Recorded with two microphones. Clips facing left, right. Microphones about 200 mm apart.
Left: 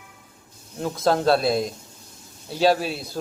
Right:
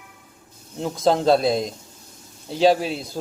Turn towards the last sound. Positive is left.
turn(degrees=-15)  # may be behind; listen again after turning